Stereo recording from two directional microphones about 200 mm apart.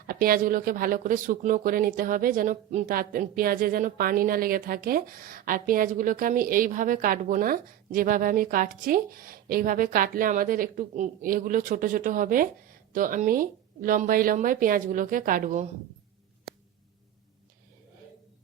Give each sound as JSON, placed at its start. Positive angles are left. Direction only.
{"t": 0.1, "sound": "speech", "side_deg": -45}